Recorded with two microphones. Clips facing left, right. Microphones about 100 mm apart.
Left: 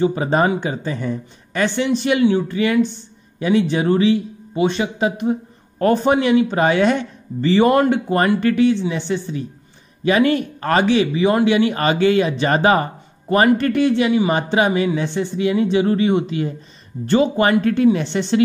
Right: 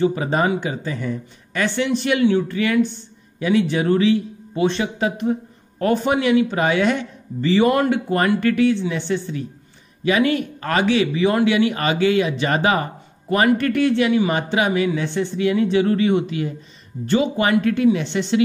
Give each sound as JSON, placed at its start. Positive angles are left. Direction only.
{"t": 0.0, "sound": "a man's voice", "side_deg": 30}
{"t": 5.8, "sound": "a man's voice", "side_deg": 35}
{"t": 10.0, "sound": "a man's voice", "side_deg": 35}
{"t": 17.0, "sound": "speech", "side_deg": 40}